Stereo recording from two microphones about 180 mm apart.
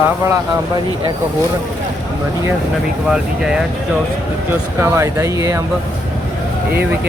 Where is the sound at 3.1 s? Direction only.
5° right (ahead or behind).